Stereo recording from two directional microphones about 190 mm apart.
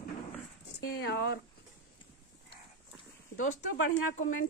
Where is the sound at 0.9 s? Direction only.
60° left (ahead or behind).